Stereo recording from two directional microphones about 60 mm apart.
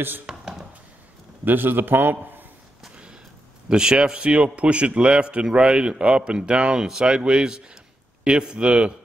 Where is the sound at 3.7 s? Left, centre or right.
Centre.